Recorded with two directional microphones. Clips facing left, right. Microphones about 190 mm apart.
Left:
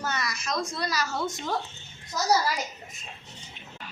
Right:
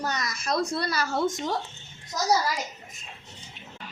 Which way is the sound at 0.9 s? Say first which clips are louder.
Right 2 dB; 55° right (ahead or behind).